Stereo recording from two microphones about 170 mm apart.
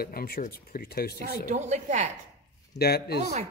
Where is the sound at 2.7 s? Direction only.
70° left (ahead or behind).